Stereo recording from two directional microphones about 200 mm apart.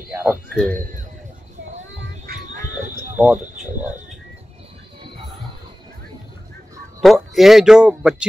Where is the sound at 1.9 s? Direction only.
50° right (ahead or behind).